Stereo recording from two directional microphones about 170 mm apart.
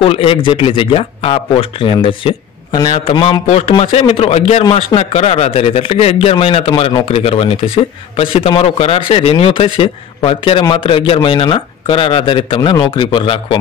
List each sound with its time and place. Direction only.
0.0 s speech: 35° left (ahead or behind)